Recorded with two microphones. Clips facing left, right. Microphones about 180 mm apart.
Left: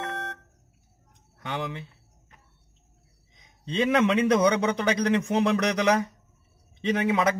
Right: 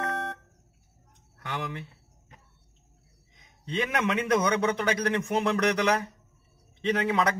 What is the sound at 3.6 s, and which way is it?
A man's voice, 25° left (ahead or behind).